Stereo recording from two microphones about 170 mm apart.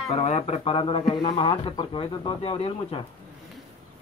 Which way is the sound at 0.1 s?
40° left (ahead or behind).